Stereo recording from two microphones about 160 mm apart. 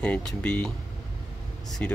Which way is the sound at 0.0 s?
5° left (ahead or behind).